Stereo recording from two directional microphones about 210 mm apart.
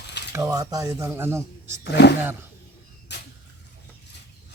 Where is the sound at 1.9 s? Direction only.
55° left (ahead or behind).